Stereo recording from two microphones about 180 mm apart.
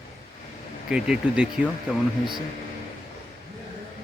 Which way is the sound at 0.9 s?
5° right (ahead or behind).